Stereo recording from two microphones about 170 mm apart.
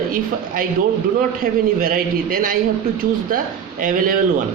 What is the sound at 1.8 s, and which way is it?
A man's voice, 55° right (ahead or behind).